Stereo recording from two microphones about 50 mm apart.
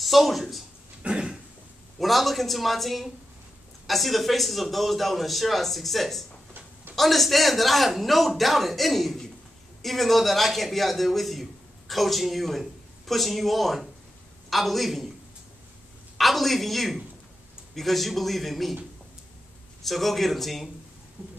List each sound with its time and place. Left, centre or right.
0.0 s speech: centre
1.0 s a sound: centre
2.0 s a man's voice: centre
16.2 s a man's voice: centre
19.8 s a man's voice: centre